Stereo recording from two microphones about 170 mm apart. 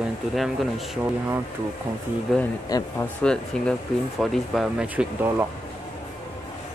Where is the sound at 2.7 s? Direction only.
20° left (ahead or behind).